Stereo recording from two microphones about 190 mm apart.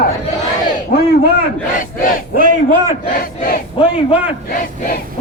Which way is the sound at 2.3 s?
45° right (ahead or behind).